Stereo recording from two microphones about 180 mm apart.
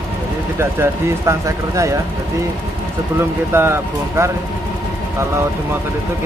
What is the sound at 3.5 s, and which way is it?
Speech, 15° right (ahead or behind).